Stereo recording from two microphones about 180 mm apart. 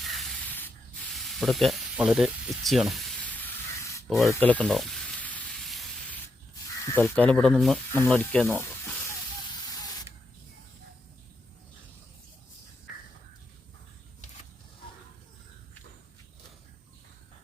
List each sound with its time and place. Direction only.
0.0 s spray: centre (ahead or behind)
0.5 s sanding: 10° left (ahead or behind)
1.1 s speech: centre (ahead or behind)
3.4 s spray: 15° left (ahead or behind)
4.1 s sizzle: centre (ahead or behind)
6.9 s speech: 10° left (ahead or behind)